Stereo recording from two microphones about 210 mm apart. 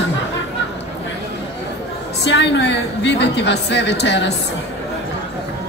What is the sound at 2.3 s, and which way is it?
A woman's voice, 55° left (ahead or behind).